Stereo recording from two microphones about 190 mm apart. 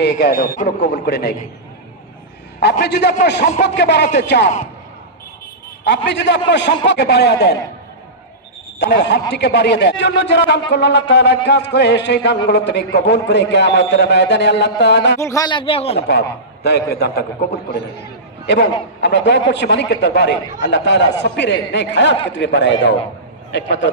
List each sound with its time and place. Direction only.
0.0 s a man's voice: 55° left (ahead or behind)
0.9 s a man's voice: 55° left (ahead or behind)
2.8 s a man's voice: 60° left (ahead or behind)
5.9 s a man's voice: 65° left (ahead or behind)
8.7 s a man's voice: 65° left (ahead or behind)
15.1 s speech: 15° left (ahead or behind)
16.0 s a man's voice: 60° left (ahead or behind)